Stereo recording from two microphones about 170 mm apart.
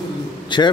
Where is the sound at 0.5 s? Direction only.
25° left (ahead or behind).